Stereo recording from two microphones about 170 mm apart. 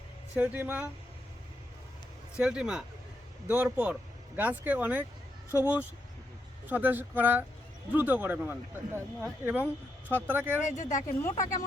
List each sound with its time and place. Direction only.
0.3 s speech: 10° right (ahead or behind)
2.4 s speech: 5° right (ahead or behind)
10.6 s speech: 45° left (ahead or behind)